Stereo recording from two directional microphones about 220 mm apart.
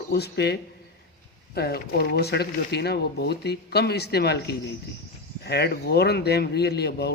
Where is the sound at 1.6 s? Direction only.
45° left (ahead or behind).